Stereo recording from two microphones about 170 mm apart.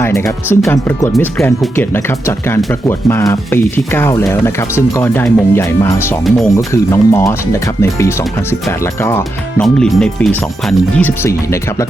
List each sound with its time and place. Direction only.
0.0 s speech: 15° left (ahead or behind)
6.2 s speech: centre (ahead or behind)
6.9 s speech: 15° left (ahead or behind)
9.6 s speech: 5° left (ahead or behind)